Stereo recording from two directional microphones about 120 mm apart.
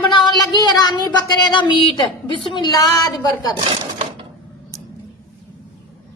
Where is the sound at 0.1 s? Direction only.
35° left (ahead or behind).